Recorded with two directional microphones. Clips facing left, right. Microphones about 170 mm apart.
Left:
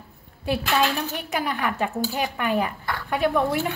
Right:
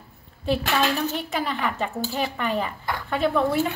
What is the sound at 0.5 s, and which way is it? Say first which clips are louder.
A woman's voice: even; 10° left (ahead or behind).